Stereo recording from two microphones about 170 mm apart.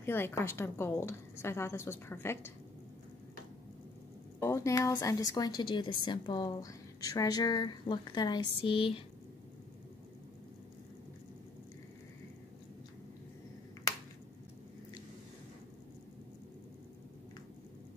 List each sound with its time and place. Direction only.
0.0 s a woman's voice: 15° left (ahead or behind)
4.4 s speech: 15° left (ahead or behind); by 9.0 s 35° left (ahead or behind)